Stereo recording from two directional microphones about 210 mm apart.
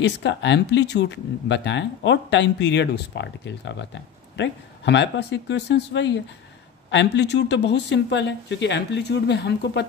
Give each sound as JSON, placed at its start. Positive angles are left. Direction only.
{"t": 0.0, "sound": "speech", "side_deg": 60}